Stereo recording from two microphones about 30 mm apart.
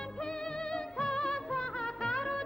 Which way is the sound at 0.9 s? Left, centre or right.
Left.